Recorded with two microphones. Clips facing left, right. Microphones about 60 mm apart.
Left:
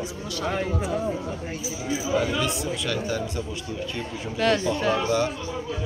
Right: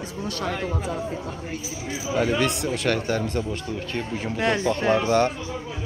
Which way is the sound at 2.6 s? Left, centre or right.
Right.